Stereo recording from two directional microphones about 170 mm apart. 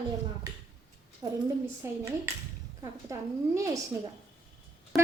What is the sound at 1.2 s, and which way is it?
Speech, 20° right (ahead or behind).